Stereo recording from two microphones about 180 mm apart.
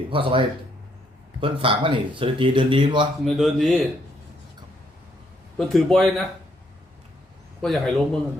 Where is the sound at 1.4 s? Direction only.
30° right (ahead or behind).